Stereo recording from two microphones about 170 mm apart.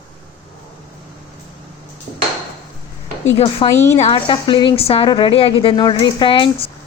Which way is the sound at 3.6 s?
30° left (ahead or behind).